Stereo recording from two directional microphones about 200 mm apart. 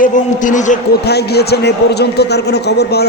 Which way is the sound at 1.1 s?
55° left (ahead or behind).